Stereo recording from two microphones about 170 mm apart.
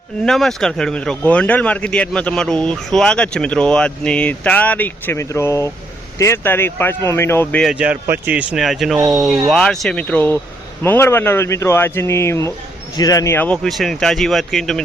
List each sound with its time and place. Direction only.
0.3 s speech: 5° left (ahead or behind)
7.6 s speech: 5° right (ahead or behind)